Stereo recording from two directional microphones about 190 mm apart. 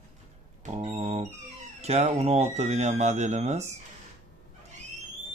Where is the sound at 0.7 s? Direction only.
30° right (ahead or behind).